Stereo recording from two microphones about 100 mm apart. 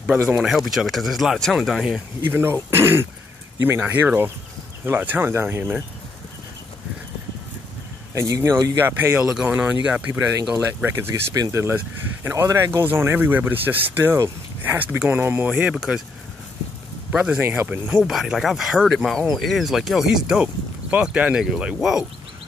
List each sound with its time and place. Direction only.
0.4 s speech: centre (ahead or behind)
2.2 s speech: 25° right (ahead or behind)
8.1 s speech: 30° right (ahead or behind)
9.2 s speech: 10° right (ahead or behind)
10.5 s speech: 25° right (ahead or behind)
11.3 s speech: 40° right (ahead or behind)
11.7 s speech: 20° right (ahead or behind)
17.1 s speech: 10° right (ahead or behind)
18.0 s speech: 5° right (ahead or behind)